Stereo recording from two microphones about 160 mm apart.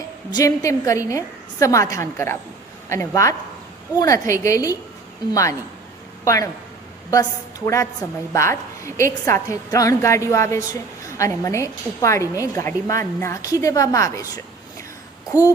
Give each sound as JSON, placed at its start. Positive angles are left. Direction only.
{"t": 0.3, "sound": "a woman's voice", "side_deg": 20}